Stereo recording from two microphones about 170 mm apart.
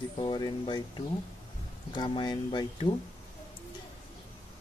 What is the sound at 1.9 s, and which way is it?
A man's voice, 25° left (ahead or behind).